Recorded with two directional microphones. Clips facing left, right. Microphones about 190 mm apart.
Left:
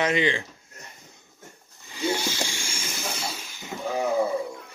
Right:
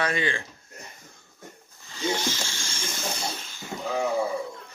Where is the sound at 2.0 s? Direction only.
15° left (ahead or behind).